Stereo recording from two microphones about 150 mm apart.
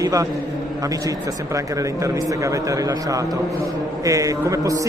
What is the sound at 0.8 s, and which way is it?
Speech, 20° right (ahead or behind).